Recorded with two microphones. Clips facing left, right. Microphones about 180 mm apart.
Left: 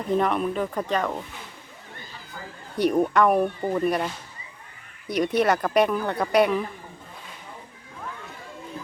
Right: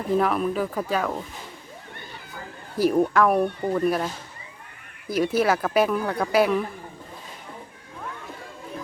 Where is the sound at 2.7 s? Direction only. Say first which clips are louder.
Right 1 dB; centre (ahead or behind).